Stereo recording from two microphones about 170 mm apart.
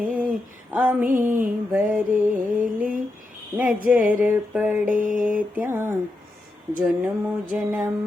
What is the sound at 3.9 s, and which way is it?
Music, 10° right (ahead or behind).